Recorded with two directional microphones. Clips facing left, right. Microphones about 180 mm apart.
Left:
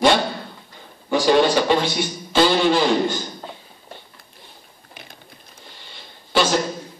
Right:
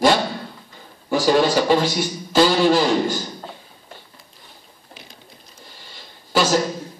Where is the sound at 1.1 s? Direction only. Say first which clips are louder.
Left 1 dB; 5° right (ahead or behind).